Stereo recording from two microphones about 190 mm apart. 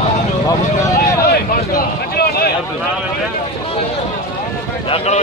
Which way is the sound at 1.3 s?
55° left (ahead or behind).